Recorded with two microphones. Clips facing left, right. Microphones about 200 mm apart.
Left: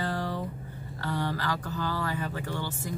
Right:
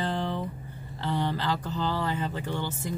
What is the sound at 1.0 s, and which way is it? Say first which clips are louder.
Speech: right 2 dB; 20° right (ahead or behind).